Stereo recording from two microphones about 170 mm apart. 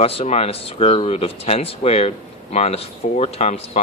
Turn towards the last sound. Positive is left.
turn(degrees=40)  # may be behind; listen again after turning